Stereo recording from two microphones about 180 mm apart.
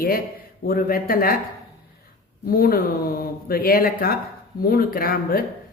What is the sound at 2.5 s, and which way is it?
A woman's voice, 55° left (ahead or behind).